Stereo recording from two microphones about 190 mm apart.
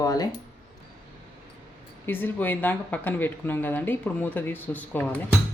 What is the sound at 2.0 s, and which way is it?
A woman's voice, 10° left (ahead or behind).